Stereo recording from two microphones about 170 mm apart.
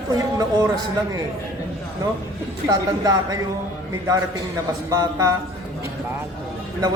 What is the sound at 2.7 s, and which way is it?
Speech, 20° right (ahead or behind).